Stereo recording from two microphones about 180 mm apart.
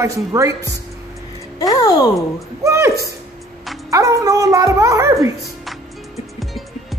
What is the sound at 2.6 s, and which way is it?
A woman's voice, 15° right (ahead or behind).